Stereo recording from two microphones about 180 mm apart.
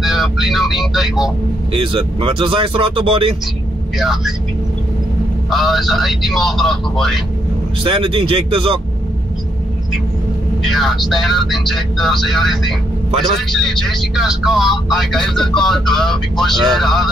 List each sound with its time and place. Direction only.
0.0 s speech: centre (ahead or behind)
1.7 s speech: 30° right (ahead or behind)
4.0 s speech: centre (ahead or behind)
5.5 s speech: centre (ahead or behind)
7.8 s speech: 30° right (ahead or behind)
10.6 s speech: centre (ahead or behind)